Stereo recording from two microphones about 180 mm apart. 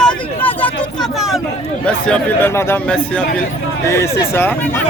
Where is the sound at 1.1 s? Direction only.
Centre (ahead or behind).